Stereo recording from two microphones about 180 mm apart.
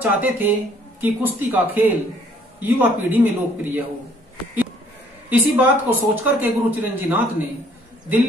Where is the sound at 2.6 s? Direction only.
10° right (ahead or behind).